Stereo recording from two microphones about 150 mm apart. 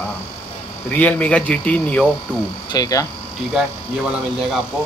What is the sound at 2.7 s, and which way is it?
Speech, 25° left (ahead or behind).